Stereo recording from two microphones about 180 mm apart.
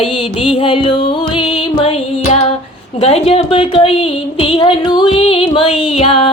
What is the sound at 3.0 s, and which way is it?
Speech, 35° left (ahead or behind).